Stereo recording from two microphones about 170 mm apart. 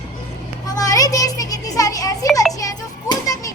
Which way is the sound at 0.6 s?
20° left (ahead or behind).